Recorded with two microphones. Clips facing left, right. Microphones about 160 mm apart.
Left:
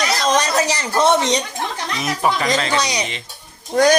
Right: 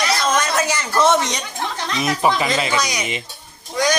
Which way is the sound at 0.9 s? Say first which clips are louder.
Left 1 dB; 25° left (ahead or behind).